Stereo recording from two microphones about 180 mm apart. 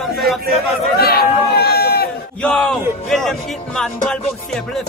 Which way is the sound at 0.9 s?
60° left (ahead or behind).